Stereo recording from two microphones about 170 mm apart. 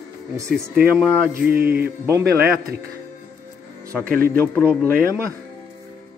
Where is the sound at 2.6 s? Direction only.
60° right (ahead or behind).